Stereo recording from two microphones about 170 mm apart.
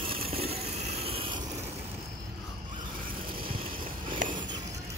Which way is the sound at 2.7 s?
50° right (ahead or behind).